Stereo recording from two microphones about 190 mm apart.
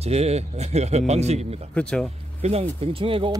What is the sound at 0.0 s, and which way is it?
Speech, 35° right (ahead or behind).